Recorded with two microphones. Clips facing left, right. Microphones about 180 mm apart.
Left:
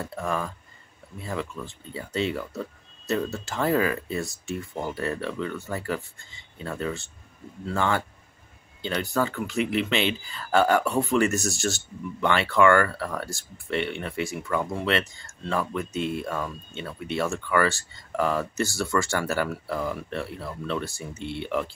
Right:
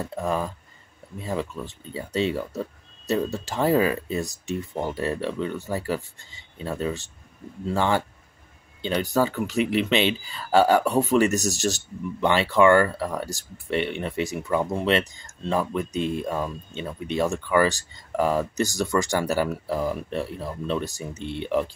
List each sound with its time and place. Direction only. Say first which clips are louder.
0.0 s speech: right 3 dB; 15° right (ahead or behind)